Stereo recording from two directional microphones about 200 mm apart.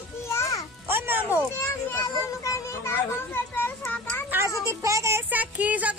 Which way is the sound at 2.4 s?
15° left (ahead or behind).